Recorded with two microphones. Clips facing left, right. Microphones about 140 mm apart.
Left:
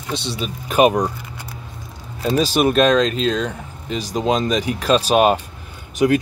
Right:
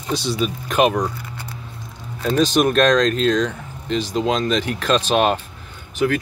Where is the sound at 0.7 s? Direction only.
10° left (ahead or behind).